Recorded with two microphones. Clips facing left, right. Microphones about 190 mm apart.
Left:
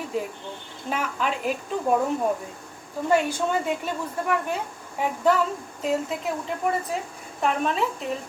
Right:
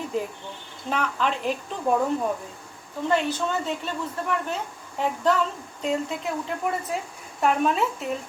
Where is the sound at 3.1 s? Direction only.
10° left (ahead or behind).